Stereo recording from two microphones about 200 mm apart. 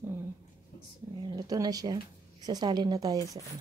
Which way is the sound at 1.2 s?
20° right (ahead or behind).